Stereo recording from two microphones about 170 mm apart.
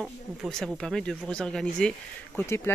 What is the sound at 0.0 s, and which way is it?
Speech, centre (ahead or behind).